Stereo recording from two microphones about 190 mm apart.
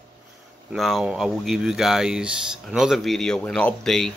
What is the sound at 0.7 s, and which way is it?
Speech, centre (ahead or behind).